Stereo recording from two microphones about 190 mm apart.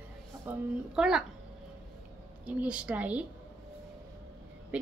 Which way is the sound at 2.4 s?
5° right (ahead or behind).